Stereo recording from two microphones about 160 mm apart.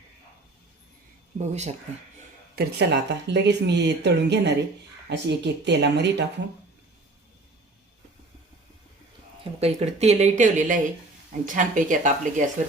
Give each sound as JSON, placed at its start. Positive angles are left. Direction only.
{"t": 1.4, "sound": "speech", "side_deg": -45}
{"t": 2.6, "sound": "speech", "side_deg": -90}
{"t": 9.4, "sound": "speech", "side_deg": -40}